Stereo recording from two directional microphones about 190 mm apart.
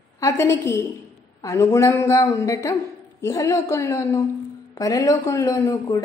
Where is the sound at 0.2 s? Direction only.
15° left (ahead or behind).